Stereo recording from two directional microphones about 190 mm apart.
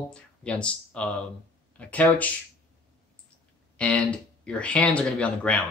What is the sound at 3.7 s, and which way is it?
Speech, 5° left (ahead or behind).